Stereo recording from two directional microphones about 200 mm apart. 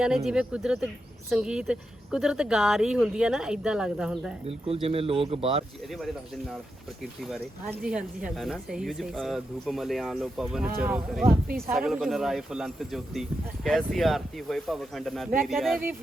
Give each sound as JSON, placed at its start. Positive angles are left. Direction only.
{"t": 0.3, "sound": "speech", "side_deg": -5}
{"t": 4.4, "sound": "speech", "side_deg": -30}
{"t": 7.7, "sound": "speech", "side_deg": -5}